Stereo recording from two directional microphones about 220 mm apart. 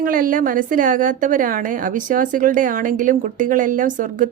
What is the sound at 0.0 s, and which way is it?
A woman's voice, 40° right (ahead or behind).